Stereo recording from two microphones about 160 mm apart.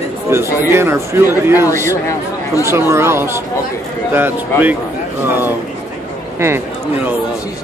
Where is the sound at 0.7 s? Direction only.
15° right (ahead or behind).